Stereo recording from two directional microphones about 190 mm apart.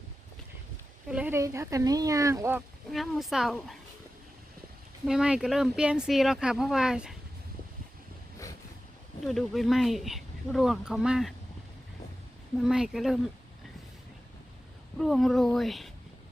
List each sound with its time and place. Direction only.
1.1 s speech: 10° right (ahead or behind)
2.9 s speech: centre (ahead or behind)
5.0 s speech: 5° right (ahead or behind)
9.2 s speech: centre (ahead or behind)
12.5 s speech: 5° right (ahead or behind)
14.9 s speech: centre (ahead or behind)